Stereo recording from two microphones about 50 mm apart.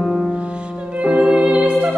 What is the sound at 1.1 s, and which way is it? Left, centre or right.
Music, centre.